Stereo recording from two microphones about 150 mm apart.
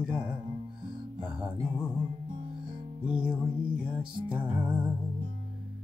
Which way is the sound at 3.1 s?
10° right (ahead or behind).